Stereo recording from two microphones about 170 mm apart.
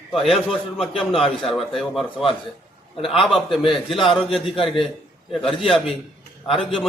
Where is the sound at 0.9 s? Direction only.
30° left (ahead or behind).